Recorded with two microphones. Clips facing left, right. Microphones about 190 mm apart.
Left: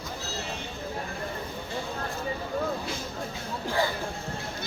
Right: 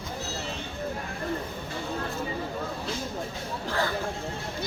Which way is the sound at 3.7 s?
15° left (ahead or behind).